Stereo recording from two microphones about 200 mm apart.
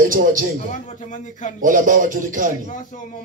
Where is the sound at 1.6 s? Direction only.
40° right (ahead or behind).